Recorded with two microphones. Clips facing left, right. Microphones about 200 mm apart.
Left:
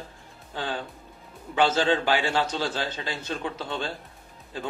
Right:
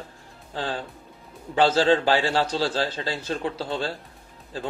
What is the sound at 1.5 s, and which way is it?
A man's voice, 35° right (ahead or behind).